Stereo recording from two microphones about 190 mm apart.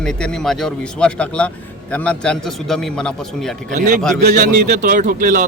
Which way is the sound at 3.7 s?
40° right (ahead or behind).